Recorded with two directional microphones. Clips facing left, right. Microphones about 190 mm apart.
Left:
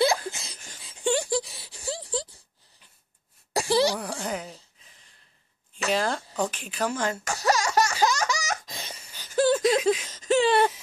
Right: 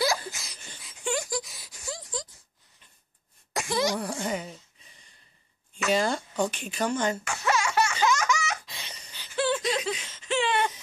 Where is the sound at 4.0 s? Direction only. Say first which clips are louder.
Right 1 dB; centre (ahead or behind).